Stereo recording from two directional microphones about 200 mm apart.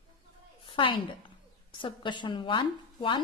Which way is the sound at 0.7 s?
25° left (ahead or behind).